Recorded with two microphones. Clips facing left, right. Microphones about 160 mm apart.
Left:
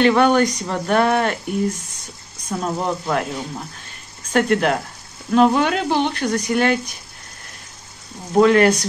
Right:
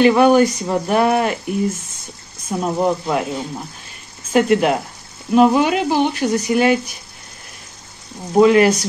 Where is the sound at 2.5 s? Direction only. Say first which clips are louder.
Right 4 dB; 10° right (ahead or behind).